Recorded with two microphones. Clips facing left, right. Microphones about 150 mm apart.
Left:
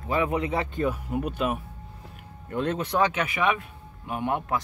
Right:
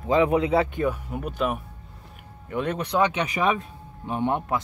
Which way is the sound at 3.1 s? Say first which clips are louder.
Right 2 dB; 35° right (ahead or behind).